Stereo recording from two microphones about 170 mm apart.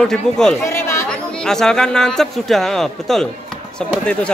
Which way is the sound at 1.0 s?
5° left (ahead or behind).